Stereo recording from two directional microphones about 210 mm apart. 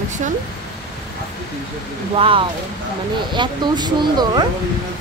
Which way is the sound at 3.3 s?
20° right (ahead or behind).